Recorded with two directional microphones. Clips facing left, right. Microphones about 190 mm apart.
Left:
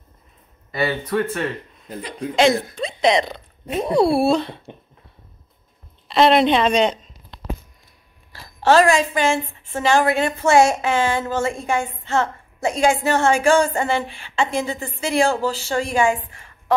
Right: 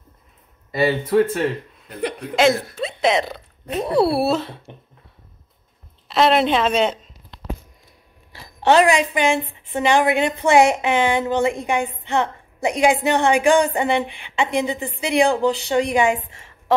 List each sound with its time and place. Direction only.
0.7 s a woman's voice: 25° right (ahead or behind)
2.7 s a woman's voice: 5° right (ahead or behind)
6.0 s a woman's voice: 5° right (ahead or behind)
8.3 s a woman's voice: 20° right (ahead or behind)